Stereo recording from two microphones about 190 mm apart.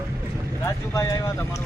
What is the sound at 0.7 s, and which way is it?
Speech, 15° left (ahead or behind).